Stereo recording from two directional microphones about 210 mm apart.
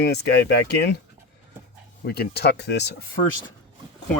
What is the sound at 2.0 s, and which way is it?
Speech, 50° left (ahead or behind).